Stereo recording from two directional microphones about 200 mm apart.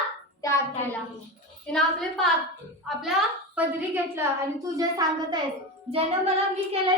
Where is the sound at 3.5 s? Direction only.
10° right (ahead or behind).